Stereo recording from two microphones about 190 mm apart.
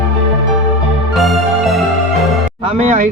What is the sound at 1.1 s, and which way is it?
Music, centre (ahead or behind).